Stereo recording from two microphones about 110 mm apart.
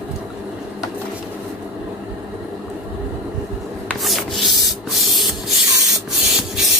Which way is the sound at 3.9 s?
Centre (ahead or behind).